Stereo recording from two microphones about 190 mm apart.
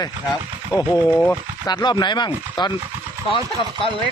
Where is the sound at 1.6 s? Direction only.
20° left (ahead or behind).